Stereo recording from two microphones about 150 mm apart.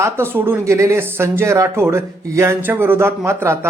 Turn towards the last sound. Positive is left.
turn(degrees=-15)  # may be behind; listen again after turning